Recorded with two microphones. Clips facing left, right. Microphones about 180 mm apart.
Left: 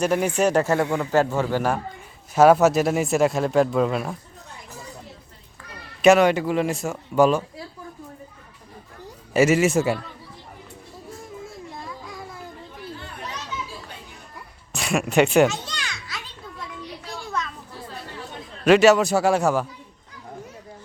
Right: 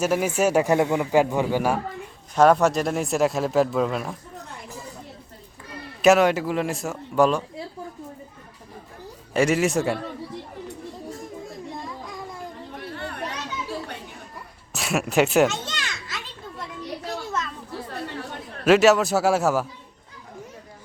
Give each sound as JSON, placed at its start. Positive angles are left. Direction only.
{"t": 0.0, "sound": "a man's voice", "side_deg": -5}
{"t": 2.3, "sound": "speech", "side_deg": 5}
{"t": 6.0, "sound": "speech", "side_deg": 0}
{"t": 9.3, "sound": "speech", "side_deg": 5}
{"t": 12.8, "sound": "chatter", "side_deg": -65}
{"t": 14.7, "sound": "children playing", "side_deg": -5}
{"t": 18.6, "sound": "speech", "side_deg": 0}